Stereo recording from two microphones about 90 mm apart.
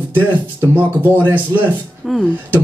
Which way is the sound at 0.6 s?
20° right (ahead or behind).